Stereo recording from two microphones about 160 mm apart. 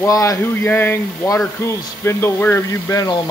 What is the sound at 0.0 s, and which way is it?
Speech, 20° left (ahead or behind).